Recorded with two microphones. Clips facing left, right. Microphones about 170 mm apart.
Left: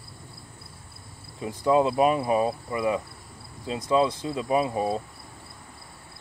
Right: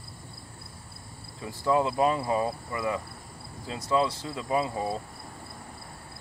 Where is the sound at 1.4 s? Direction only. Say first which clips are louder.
Left 4 dB; 20° left (ahead or behind).